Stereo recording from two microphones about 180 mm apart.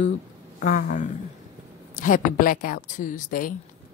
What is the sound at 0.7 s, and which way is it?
A woman's voice, 45° left (ahead or behind).